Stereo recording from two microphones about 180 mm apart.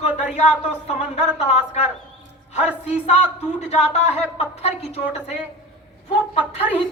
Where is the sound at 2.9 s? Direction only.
35° left (ahead or behind).